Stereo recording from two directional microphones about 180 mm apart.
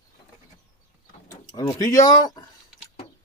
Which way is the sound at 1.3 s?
20° left (ahead or behind).